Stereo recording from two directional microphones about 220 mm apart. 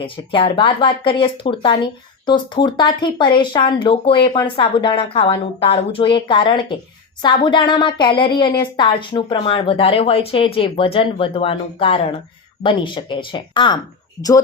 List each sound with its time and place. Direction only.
0.0 s a woman's voice: 25° left (ahead or behind)